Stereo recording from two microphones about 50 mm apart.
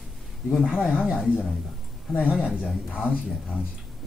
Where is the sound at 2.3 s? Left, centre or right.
Centre.